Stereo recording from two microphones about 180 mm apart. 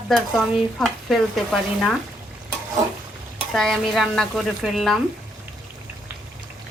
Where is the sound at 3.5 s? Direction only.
Centre (ahead or behind).